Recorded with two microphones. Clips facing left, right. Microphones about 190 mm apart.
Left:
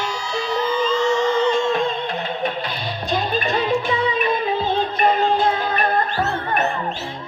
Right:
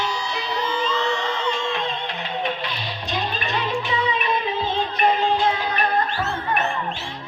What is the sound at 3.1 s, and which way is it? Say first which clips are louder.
Music: left 5 dB; 40° left (ahead or behind).